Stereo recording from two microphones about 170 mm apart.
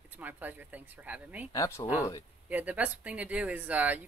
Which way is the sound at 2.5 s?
10° right (ahead or behind).